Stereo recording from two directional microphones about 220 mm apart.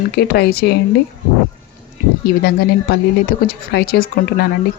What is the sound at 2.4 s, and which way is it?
A woman's voice, 45° left (ahead or behind).